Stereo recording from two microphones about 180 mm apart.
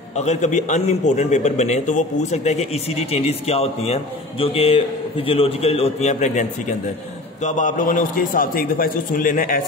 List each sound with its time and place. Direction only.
0.1 s a man's voice: 40° left (ahead or behind)
7.4 s a man's voice: 45° left (ahead or behind)